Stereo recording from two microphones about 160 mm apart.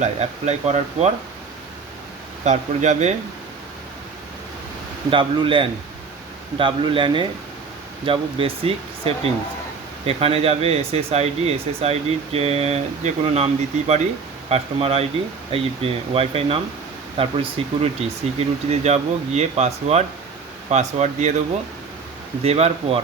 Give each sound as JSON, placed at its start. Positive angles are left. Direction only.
{"t": 0.0, "sound": "speech", "side_deg": -45}
{"t": 2.4, "sound": "speech", "side_deg": -45}
{"t": 5.1, "sound": "speech", "side_deg": -30}
{"t": 17.6, "sound": "speech", "side_deg": -35}
{"t": 22.4, "sound": "speech", "side_deg": -40}